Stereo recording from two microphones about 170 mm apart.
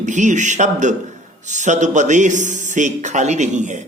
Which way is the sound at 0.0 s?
45° right (ahead or behind).